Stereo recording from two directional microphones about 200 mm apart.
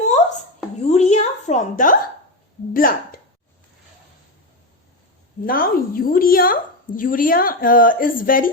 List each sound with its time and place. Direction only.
0.0 s a sound: 35° left (ahead or behind)
2.7 s speech: 45° left (ahead or behind)
5.5 s a woman's voice: 45° left (ahead or behind)